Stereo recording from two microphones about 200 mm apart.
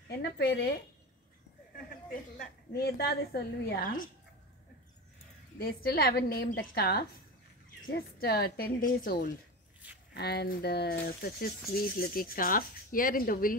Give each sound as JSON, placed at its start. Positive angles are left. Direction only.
{"t": 0.2, "sound": "speech", "side_deg": 55}
{"t": 2.3, "sound": "speech", "side_deg": 50}
{"t": 5.6, "sound": "speech", "side_deg": 50}